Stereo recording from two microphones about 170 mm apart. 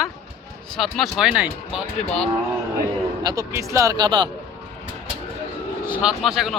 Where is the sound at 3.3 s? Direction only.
15° right (ahead or behind).